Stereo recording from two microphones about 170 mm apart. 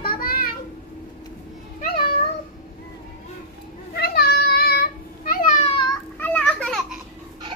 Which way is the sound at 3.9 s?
65° left (ahead or behind).